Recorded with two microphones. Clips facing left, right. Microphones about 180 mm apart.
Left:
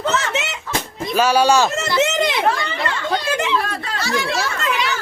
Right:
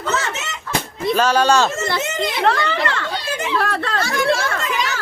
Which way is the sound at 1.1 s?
10° left (ahead or behind).